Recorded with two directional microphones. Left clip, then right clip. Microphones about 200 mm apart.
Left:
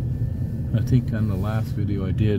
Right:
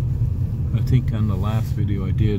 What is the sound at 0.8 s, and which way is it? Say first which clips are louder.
Speech: even; 5° left (ahead or behind).